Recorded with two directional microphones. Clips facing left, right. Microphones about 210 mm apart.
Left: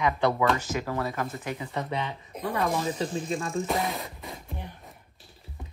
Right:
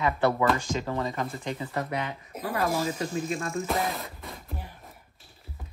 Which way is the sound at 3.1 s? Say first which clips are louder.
Even; 30° left (ahead or behind).